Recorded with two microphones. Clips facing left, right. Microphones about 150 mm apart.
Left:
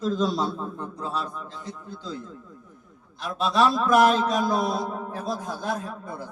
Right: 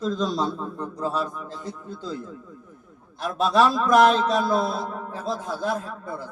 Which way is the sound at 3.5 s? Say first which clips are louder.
Right 2 dB; centre (ahead or behind).